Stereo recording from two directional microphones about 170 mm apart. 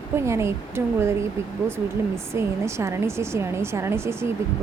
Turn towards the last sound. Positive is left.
turn(degrees=-15)  # may be behind; listen again after turning